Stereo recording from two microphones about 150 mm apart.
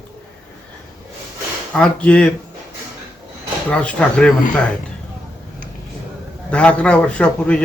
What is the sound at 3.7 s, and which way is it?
Speech, 5° left (ahead or behind).